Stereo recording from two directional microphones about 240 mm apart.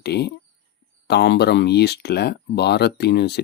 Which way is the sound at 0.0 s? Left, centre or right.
Left.